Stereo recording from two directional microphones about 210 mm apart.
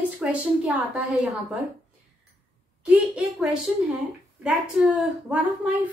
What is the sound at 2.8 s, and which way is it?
A woman's voice, 5° right (ahead or behind).